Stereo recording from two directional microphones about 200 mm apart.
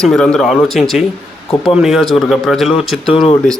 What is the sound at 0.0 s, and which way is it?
Speech, 5° left (ahead or behind).